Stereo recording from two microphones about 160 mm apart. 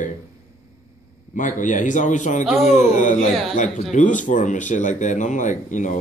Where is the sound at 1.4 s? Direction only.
55° left (ahead or behind).